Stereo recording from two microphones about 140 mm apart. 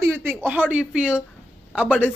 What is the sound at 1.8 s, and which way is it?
Speech, 10° left (ahead or behind).